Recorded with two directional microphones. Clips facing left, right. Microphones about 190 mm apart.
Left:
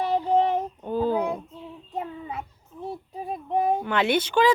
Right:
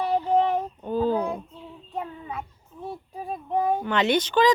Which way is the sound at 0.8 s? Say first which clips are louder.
Right 1 dB; 10° left (ahead or behind).